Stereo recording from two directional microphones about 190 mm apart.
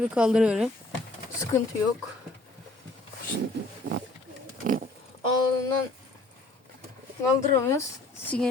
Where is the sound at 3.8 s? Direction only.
50° right (ahead or behind).